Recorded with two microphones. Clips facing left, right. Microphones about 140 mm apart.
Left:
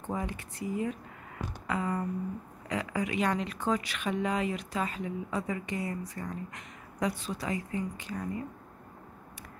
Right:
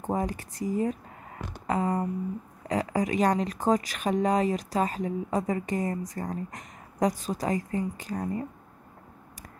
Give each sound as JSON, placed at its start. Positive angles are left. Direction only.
{"t": 0.0, "sound": "speech", "side_deg": -40}